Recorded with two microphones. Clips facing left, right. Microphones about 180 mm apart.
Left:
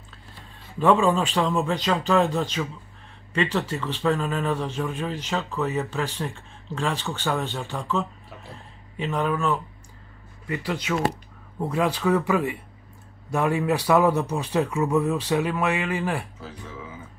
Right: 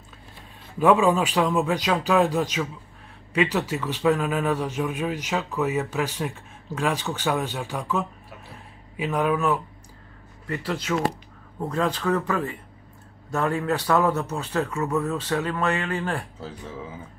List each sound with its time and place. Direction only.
0.7 s a man's voice: 10° right (ahead or behind); by 16.3 s 10° left (ahead or behind)